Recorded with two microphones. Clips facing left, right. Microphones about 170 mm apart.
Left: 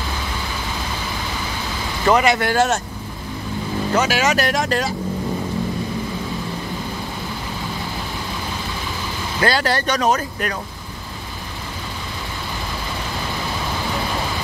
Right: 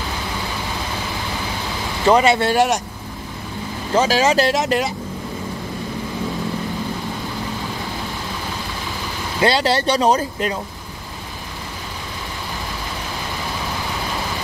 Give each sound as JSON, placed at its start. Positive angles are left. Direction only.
{"t": 2.0, "sound": "speech", "side_deg": -30}
{"t": 3.9, "sound": "speech", "side_deg": -30}
{"t": 9.4, "sound": "speech", "side_deg": -25}